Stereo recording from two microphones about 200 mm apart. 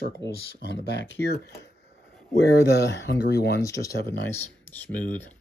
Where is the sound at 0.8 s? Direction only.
60° left (ahead or behind).